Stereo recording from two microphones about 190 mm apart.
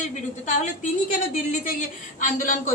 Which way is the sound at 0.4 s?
40° left (ahead or behind).